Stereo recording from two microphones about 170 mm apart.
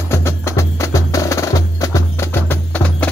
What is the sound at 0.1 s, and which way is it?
Music, 15° left (ahead or behind).